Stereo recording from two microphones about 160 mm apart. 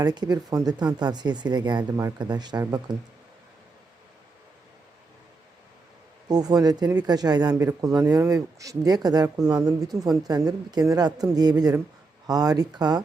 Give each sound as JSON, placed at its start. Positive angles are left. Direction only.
{"t": 0.0, "sound": "speech", "side_deg": -25}
{"t": 6.2, "sound": "speech", "side_deg": -25}